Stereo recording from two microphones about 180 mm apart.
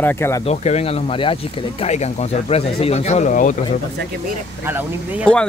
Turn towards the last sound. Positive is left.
turn(degrees=-10)  # may be behind; listen again after turning